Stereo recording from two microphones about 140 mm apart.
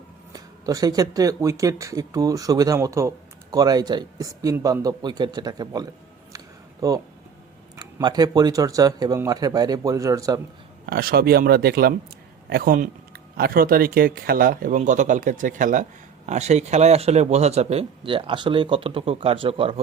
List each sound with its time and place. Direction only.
0.3 s speech: 25° right (ahead or behind)
8.0 s speech: 30° right (ahead or behind)
10.8 s speech: 90° right; by 19.8 s 40° right (ahead or behind)